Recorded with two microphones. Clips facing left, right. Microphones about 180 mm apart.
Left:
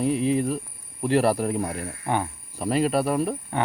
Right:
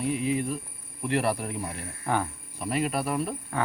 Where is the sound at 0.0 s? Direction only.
35° left (ahead or behind).